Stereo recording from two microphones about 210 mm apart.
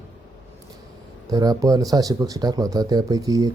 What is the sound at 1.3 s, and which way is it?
Speech, 15° right (ahead or behind).